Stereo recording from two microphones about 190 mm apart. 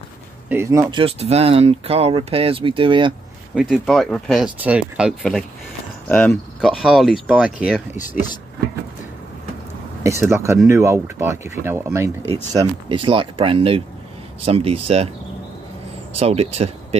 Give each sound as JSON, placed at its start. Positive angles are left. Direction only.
{"t": 0.5, "sound": "speech", "side_deg": -15}
{"t": 3.5, "sound": "speech", "side_deg": 0}
{"t": 6.0, "sound": "speech", "side_deg": 5}
{"t": 10.0, "sound": "speech", "side_deg": -15}
{"t": 12.5, "sound": "speech", "side_deg": -25}
{"t": 16.2, "sound": "speech", "side_deg": -35}